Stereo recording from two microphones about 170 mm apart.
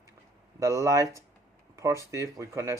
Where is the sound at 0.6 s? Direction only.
20° right (ahead or behind).